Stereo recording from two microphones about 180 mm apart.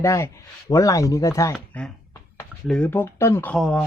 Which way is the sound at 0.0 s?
15° left (ahead or behind).